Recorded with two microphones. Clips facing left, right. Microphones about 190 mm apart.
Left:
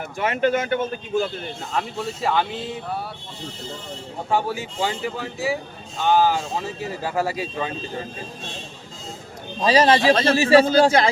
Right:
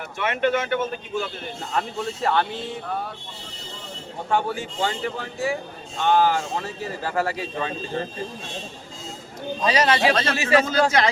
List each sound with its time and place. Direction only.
0.2 s speech: 40° left (ahead or behind)
2.2 s speech: 5° left (ahead or behind)
4.3 s speech: 5° left (ahead or behind)
9.6 s speech: 30° left (ahead or behind)